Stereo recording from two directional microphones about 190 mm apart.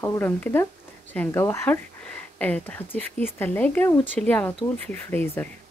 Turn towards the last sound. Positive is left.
turn(degrees=10)  # may be behind; listen again after turning